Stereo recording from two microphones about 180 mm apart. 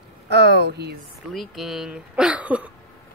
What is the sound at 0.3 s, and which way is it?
Speech, 70° right (ahead or behind).